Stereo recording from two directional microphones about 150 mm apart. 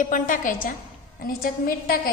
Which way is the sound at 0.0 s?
60° left (ahead or behind).